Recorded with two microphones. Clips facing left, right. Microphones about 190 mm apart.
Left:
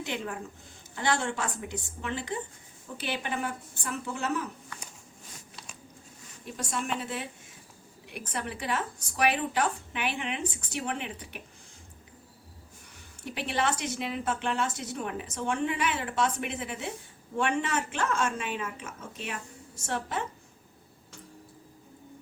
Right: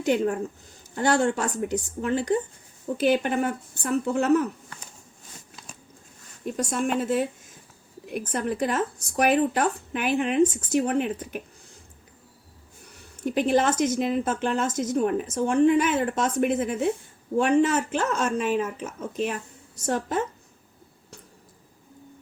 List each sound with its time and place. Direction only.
0.0 s speech: 45° right (ahead or behind)
6.7 s speech: 45° right (ahead or behind)
13.2 s speech: 40° right (ahead or behind)